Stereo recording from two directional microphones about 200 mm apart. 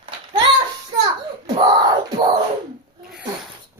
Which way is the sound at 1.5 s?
20° right (ahead or behind).